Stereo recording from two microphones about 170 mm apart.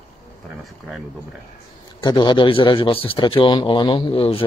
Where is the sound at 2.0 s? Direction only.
25° left (ahead or behind).